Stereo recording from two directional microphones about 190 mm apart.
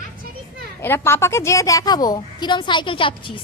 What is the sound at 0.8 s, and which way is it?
A woman's voice, 10° left (ahead or behind).